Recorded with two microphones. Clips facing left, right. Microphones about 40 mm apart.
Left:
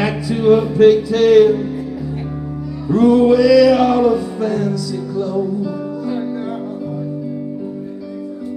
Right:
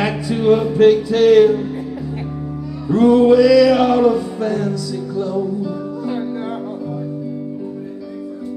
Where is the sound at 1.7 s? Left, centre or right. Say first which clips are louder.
Left 1 dB; centre.